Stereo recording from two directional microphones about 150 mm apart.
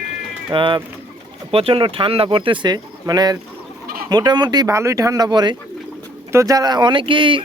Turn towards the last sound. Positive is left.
turn(degrees=-35)  # may be behind; listen again after turning